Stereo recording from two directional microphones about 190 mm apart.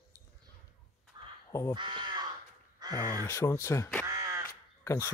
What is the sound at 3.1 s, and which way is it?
Speech, 10° left (ahead or behind).